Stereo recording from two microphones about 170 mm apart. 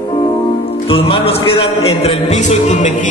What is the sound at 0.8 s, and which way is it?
A man's voice, 30° left (ahead or behind).